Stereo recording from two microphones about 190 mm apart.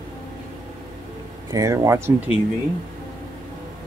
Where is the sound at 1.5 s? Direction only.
15° right (ahead or behind).